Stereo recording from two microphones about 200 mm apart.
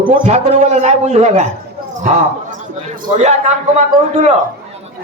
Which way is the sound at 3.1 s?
35° right (ahead or behind).